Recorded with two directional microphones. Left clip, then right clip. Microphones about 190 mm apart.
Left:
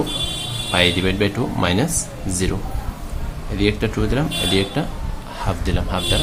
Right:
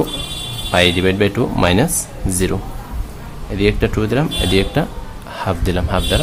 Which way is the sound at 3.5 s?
20° right (ahead or behind).